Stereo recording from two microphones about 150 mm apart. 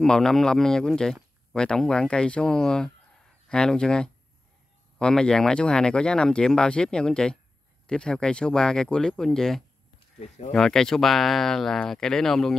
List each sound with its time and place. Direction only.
0.0 s speech: 5° left (ahead or behind)
10.2 s speech: 45° left (ahead or behind)
10.5 s speech: 5° left (ahead or behind)